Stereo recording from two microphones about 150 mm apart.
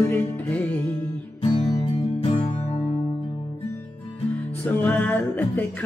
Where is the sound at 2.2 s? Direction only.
45° left (ahead or behind).